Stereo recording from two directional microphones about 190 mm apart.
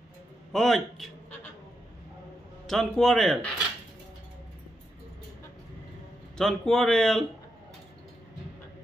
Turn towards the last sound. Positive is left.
turn(degrees=5)  # may be behind; listen again after turning